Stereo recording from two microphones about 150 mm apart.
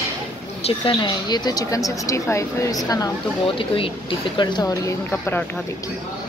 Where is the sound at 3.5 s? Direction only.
35° left (ahead or behind); by 5.4 s 15° left (ahead or behind).